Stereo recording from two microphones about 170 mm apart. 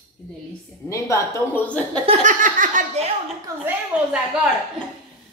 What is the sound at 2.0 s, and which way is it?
Laughter, 50° right (ahead or behind).